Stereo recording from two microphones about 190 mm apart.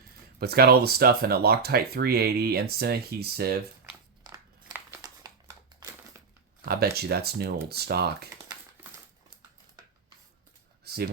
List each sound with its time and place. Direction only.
0.3 s speech: 55° right (ahead or behind)
4.7 s crumpling: 15° right (ahead or behind)
6.7 s speech: 55° right (ahead or behind)
10.8 s a sound: 55° right (ahead or behind)